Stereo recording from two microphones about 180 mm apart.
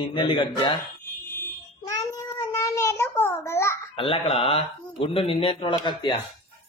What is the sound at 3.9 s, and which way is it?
A child's voice, 30° left (ahead or behind).